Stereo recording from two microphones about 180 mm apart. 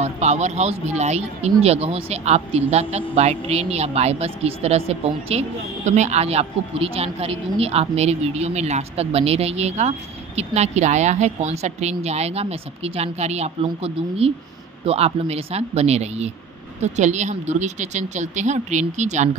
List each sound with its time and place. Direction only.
0.0 s speech: 40° right (ahead or behind)